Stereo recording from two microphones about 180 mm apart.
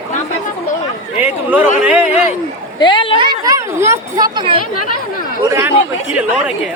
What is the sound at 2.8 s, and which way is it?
Speech, 25° left (ahead or behind).